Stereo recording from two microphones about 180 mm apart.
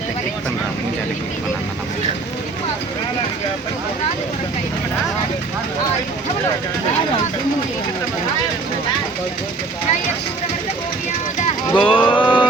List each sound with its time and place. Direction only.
11.7 s music: 30° left (ahead or behind)